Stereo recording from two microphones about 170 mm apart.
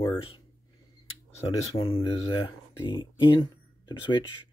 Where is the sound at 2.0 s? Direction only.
30° left (ahead or behind).